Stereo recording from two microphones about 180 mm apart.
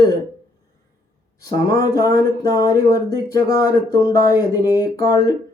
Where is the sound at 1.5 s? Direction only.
20° left (ahead or behind).